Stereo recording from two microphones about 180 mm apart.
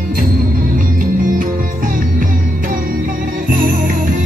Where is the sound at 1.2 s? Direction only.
50° right (ahead or behind).